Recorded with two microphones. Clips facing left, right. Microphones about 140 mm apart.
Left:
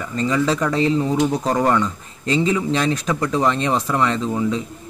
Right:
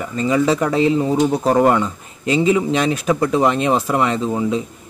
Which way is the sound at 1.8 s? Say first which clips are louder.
Even; 10° right (ahead or behind).